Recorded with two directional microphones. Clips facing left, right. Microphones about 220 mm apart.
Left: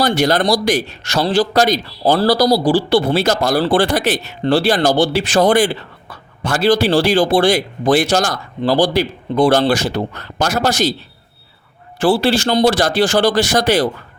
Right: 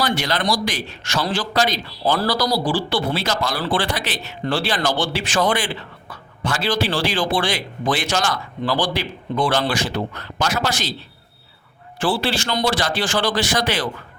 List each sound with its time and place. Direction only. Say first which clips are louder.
0.0 s a man's voice: left 7 dB; 40° left (ahead or behind)
11.9 s a man's voice: left 7 dB; 40° left (ahead or behind)